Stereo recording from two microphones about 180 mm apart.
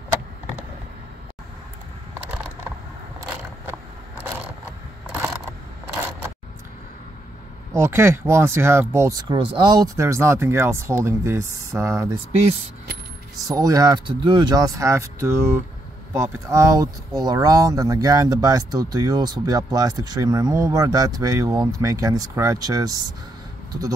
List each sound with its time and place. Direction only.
2.1 s a sound: 5° right (ahead or behind)
7.7 s speech: 15° right (ahead or behind)
13.4 s speech: 20° right (ahead or behind)